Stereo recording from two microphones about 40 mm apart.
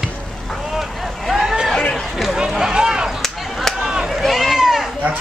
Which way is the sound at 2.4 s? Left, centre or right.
Centre.